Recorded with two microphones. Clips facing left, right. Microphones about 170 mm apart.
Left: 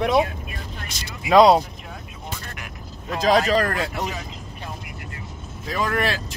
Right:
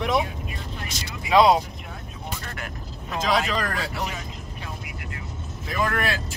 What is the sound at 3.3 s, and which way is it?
Speech, 40° left (ahead or behind).